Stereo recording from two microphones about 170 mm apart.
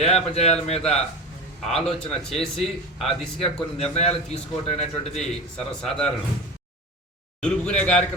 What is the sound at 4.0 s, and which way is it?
A man's voice, 40° left (ahead or behind).